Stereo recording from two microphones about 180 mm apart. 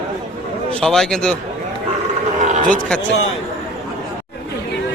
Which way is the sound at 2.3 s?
40° right (ahead or behind).